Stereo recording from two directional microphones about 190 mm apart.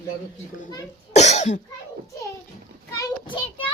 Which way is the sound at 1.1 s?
35° left (ahead or behind).